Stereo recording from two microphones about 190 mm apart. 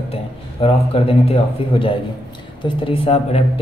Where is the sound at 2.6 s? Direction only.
30° left (ahead or behind).